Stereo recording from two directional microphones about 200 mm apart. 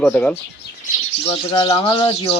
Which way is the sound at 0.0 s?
5° left (ahead or behind).